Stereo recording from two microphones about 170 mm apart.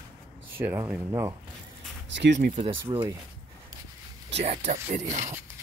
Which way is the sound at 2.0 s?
90° right.